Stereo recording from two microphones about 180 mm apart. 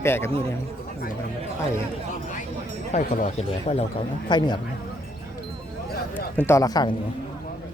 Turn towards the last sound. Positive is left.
turn(degrees=20)  # may be behind; listen again after turning